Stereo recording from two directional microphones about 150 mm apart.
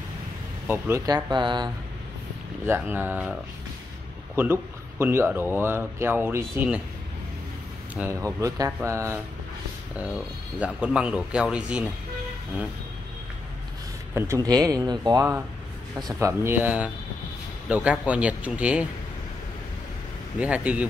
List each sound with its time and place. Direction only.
0.7 s speech: 15° right (ahead or behind)
2.6 s speech: 15° right (ahead or behind)
4.4 s speech: 15° right (ahead or behind)
7.9 s speech: 10° right (ahead or behind)
8.4 s speech: 20° right (ahead or behind)
10.1 s speech: 5° right (ahead or behind)
14.1 s speech: 15° right (ahead or behind)
20.3 s speech: 10° right (ahead or behind)